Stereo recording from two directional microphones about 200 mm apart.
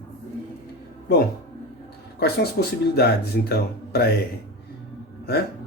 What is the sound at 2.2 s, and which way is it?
Speech, 55° left (ahead or behind).